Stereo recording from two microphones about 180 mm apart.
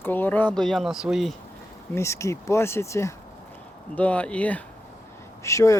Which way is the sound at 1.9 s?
15° left (ahead or behind).